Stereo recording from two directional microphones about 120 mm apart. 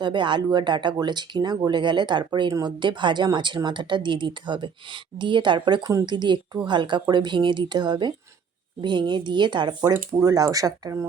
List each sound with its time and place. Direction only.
0.0 s speech: 40° right (ahead or behind)
9.9 s speech: 25° right (ahead or behind)